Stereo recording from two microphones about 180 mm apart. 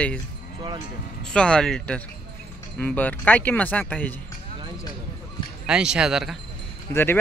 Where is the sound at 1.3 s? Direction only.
5° left (ahead or behind).